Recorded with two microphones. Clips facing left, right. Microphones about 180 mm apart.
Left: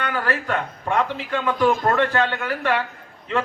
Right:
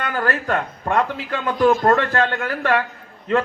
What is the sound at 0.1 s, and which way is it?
A man's voice, 45° right (ahead or behind).